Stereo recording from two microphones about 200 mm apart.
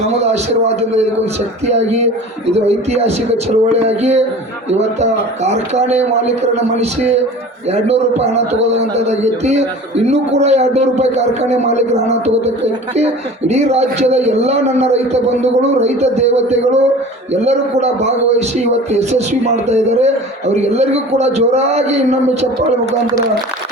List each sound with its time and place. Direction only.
1.2 s a man's voice: 35° right (ahead or behind)
13.5 s a man's voice: 35° right (ahead or behind)